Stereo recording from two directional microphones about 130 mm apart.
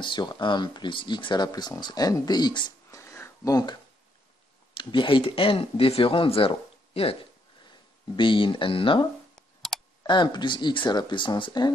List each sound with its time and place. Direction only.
0.0 s speech: 35° left (ahead or behind)
3.0 s a sound: 20° left (ahead or behind)
4.7 s speech: 40° left (ahead or behind)
8.2 s speech: 40° left (ahead or behind)
9.3 s clicking: centre (ahead or behind)
10.0 s speech: 35° left (ahead or behind)